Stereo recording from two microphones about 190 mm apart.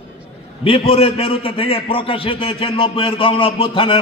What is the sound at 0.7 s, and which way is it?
A man's voice, 30° left (ahead or behind).